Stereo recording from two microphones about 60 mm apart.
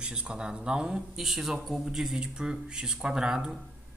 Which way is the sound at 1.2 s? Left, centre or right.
Centre.